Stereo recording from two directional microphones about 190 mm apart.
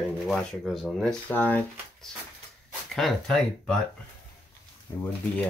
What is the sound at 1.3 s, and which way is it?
Speech, 10° left (ahead or behind).